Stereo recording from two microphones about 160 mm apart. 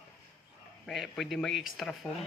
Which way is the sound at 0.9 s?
Centre (ahead or behind).